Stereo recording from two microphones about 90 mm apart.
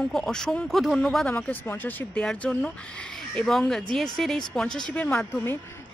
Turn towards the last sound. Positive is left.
turn(degrees=25)  # may be behind; listen again after turning